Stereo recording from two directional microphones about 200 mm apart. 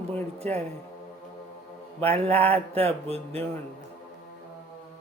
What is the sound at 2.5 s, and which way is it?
Mantra, 30° right (ahead or behind).